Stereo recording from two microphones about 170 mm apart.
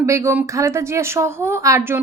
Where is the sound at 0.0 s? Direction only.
15° right (ahead or behind).